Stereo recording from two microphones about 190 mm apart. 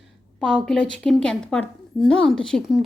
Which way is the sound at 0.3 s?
5° left (ahead or behind).